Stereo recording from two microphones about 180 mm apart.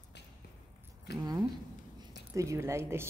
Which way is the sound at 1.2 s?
20° right (ahead or behind).